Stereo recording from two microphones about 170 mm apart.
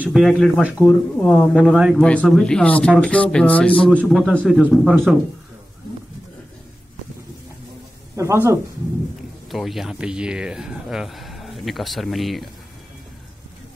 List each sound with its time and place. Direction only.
0.0 s a man's voice: centre (ahead or behind)
8.2 s speech: 15° right (ahead or behind)
9.5 s speech: centre (ahead or behind)